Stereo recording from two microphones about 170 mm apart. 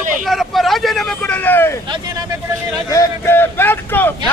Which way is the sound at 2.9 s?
15° left (ahead or behind).